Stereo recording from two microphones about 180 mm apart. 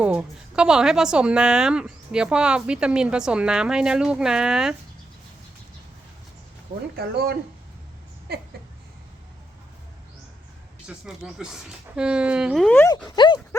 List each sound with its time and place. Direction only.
0.0 s a woman's voice: 5° right (ahead or behind)
6.9 s speech: 60° right (ahead or behind)
8.3 s a sound: 60° right (ahead or behind)
10.8 s a woman's voice: 5° right (ahead or behind)
13.1 s speech: 25° left (ahead or behind)